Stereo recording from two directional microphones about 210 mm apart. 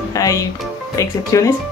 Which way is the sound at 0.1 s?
15° left (ahead or behind).